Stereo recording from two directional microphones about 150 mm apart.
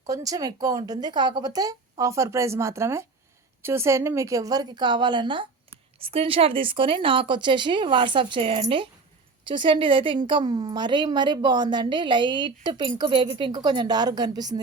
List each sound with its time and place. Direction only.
0.0 s a woman's voice: 25° right (ahead or behind)